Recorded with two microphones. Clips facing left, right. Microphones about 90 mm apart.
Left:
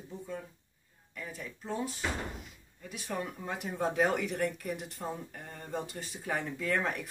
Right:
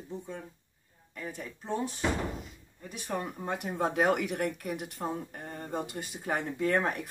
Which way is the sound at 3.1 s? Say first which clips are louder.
Right 2 dB; 35° right (ahead or behind).